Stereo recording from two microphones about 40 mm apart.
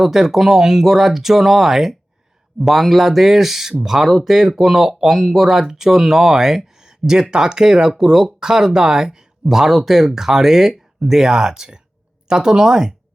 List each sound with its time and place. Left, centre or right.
0.0 s speech: centre